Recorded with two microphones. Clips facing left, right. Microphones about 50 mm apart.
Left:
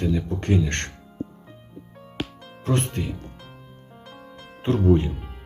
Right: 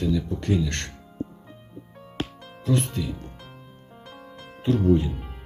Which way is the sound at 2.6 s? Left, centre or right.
Left.